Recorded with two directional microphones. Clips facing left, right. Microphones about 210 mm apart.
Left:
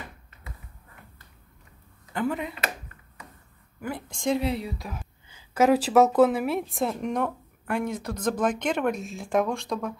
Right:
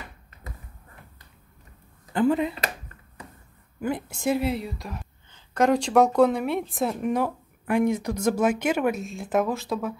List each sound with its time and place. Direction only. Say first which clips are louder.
2.1 s speech: right 6 dB; 30° right (ahead or behind)
4.1 s a woman's voice: left 1 dB; 5° right (ahead or behind)